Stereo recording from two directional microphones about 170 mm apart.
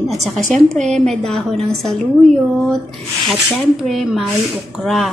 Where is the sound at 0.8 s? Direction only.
45° right (ahead or behind).